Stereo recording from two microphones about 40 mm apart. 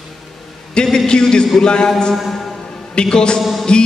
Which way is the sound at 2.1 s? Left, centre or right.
Centre.